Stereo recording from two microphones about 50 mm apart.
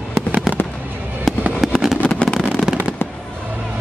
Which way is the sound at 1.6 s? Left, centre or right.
Centre.